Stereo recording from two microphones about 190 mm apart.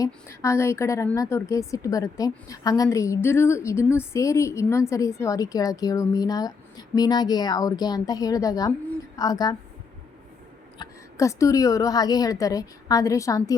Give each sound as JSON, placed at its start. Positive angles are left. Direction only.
{"t": 0.0, "sound": "a woman's voice", "side_deg": 15}
{"t": 10.8, "sound": "a woman's voice", "side_deg": 15}